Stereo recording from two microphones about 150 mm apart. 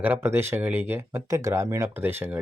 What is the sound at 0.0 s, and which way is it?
Speech, 15° right (ahead or behind).